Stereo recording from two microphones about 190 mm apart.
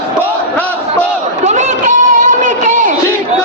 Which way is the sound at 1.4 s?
35° right (ahead or behind).